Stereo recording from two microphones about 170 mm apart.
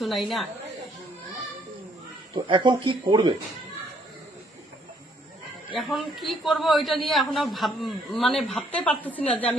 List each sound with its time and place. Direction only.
0.0 s a man's voice: centre (ahead or behind)
2.3 s speech: 25° right (ahead or behind)
5.7 s a man's voice: centre (ahead or behind)